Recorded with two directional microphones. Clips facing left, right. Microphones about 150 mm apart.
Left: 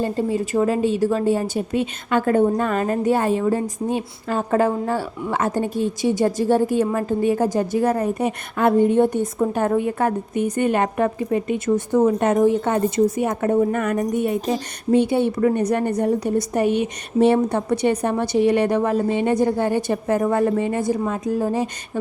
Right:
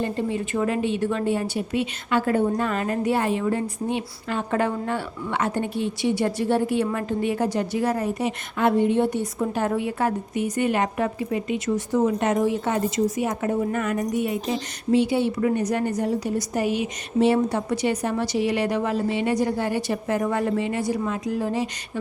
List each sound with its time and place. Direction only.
0.0 s a woman's voice: 35° left (ahead or behind)
3.1 s a woman's voice: 45° left (ahead or behind)